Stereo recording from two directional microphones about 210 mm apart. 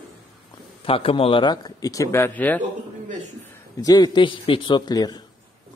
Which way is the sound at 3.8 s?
20° left (ahead or behind).